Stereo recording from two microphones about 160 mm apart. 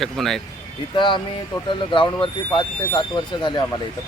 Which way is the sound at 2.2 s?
30° left (ahead or behind).